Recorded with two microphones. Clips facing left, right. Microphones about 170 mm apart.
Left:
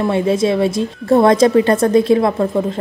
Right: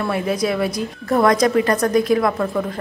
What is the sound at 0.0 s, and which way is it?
A woman's voice, 25° left (ahead or behind).